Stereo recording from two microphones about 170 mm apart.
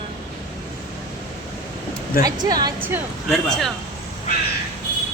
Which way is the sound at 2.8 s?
10° right (ahead or behind).